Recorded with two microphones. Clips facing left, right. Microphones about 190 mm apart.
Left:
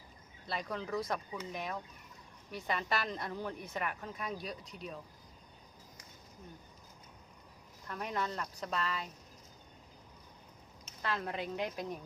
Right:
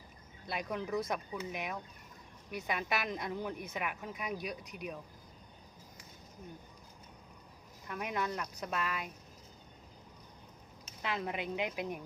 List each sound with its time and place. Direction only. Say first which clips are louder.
0.4 s a woman's voice: right 1 dB; 15° right (ahead or behind)
7.9 s a woman's voice: right 1 dB; 10° right (ahead or behind)
11.0 s a woman's voice: even; 15° right (ahead or behind)